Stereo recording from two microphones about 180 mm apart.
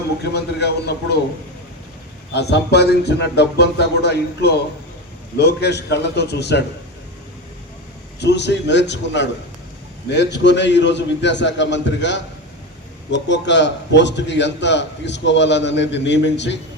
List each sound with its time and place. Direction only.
0.3 s speech: 65° left (ahead or behind)
2.3 s a man's voice: 65° left (ahead or behind)
8.2 s a man's voice: 70° left (ahead or behind)